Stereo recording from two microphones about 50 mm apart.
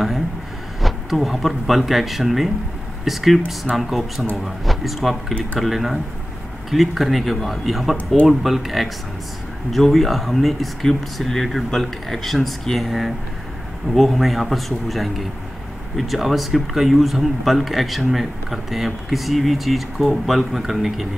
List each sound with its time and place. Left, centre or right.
0.7 s speech: centre